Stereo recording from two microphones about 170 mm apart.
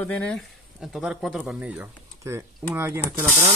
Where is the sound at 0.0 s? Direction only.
10° left (ahead or behind); by 3.4 s 15° right (ahead or behind).